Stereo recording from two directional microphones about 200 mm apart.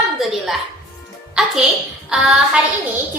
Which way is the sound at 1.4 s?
5° right (ahead or behind).